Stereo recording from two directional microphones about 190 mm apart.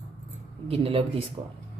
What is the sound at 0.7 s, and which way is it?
Speech, 30° right (ahead or behind).